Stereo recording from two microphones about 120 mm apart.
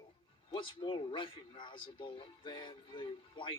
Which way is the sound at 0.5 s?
45° left (ahead or behind).